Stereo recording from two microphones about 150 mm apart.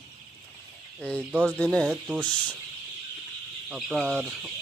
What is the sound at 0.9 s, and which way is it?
Speech, 5° left (ahead or behind).